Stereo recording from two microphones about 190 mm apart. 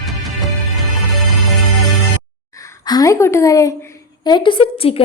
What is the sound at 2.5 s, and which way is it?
A woman's voice, 15° left (ahead or behind).